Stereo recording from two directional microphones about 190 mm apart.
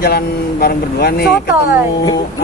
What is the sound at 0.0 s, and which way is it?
Speech, 55° left (ahead or behind).